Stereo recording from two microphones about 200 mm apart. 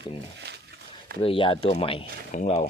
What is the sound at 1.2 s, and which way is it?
Speech, 25° left (ahead or behind).